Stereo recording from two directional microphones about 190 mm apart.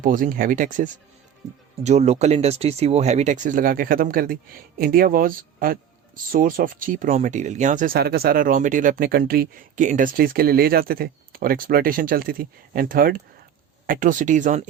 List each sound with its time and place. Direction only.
0.0 s speech: 45° right (ahead or behind)